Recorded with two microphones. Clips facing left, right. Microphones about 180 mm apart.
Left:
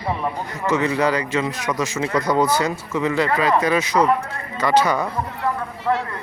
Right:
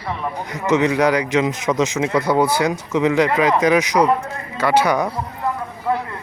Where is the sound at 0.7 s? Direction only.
20° right (ahead or behind).